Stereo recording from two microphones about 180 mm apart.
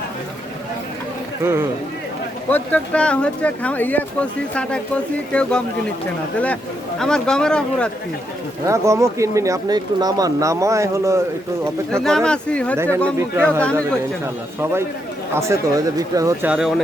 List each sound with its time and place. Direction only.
1.4 s speech: 15° right (ahead or behind)
2.5 s speech: 5° left (ahead or behind)
7.0 s speech: 5° left (ahead or behind)
8.6 s speech: 15° right (ahead or behind)
12.0 s speech: 5° left (ahead or behind)
12.7 s speech: 15° right (ahead or behind)
13.6 s speech: 5° left (ahead or behind)
14.6 s speech: 15° right (ahead or behind)
16.5 s speech: centre (ahead or behind)